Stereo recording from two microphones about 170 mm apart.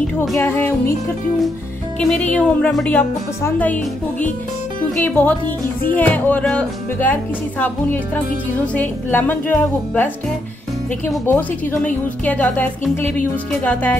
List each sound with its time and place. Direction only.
0.0 s a woman's voice: 5° left (ahead or behind)
2.0 s a woman's voice: 10° left (ahead or behind)
11.2 s a woman's voice: 10° left (ahead or behind)